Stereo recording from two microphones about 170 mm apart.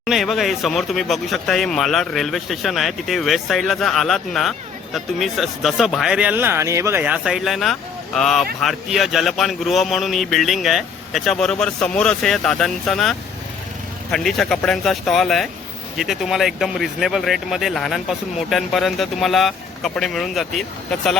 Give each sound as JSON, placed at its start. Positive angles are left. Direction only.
{"t": 0.0, "sound": "speech", "side_deg": 0}